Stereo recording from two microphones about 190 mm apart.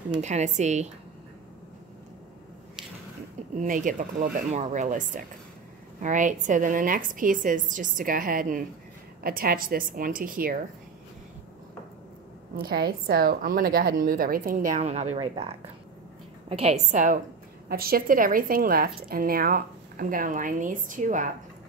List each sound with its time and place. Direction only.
0.2 s a woman's voice: 35° right (ahead or behind)
3.5 s a woman's voice: 45° right (ahead or behind)
12.5 s a woman's voice: 55° right (ahead or behind)
17.6 s a woman's voice: 50° right (ahead or behind)